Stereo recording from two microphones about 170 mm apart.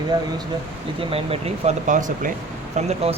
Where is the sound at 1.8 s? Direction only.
50° right (ahead or behind).